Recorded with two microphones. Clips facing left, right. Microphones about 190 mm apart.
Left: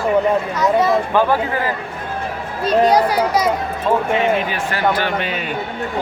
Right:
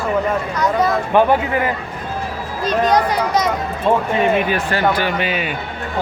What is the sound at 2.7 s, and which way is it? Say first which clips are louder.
Speech: left 2 dB; 10° left (ahead or behind).